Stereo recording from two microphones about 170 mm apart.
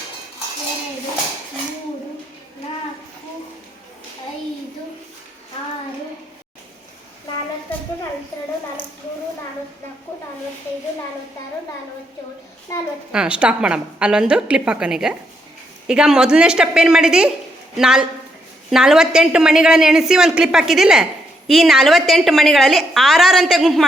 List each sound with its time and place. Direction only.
12.7 s a woman's voice: 20° left (ahead or behind)
13.1 s a woman's voice: 5° right (ahead or behind)